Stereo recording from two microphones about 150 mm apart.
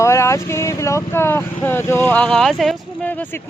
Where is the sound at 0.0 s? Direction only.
20° left (ahead or behind); by 2.8 s centre (ahead or behind).